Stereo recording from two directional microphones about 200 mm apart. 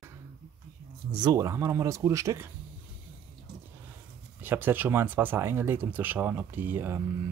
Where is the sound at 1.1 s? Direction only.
20° right (ahead or behind).